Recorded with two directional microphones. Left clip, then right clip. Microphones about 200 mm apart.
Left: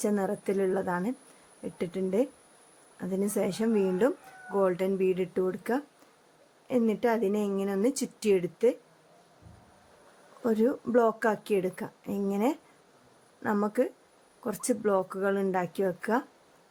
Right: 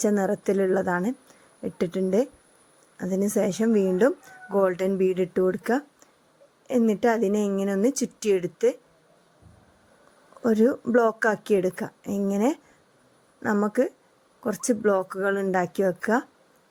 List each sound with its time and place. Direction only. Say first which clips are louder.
0.0 s a woman's voice: right 6 dB; 25° right (ahead or behind)
10.4 s a woman's voice: right 5 dB; 25° right (ahead or behind)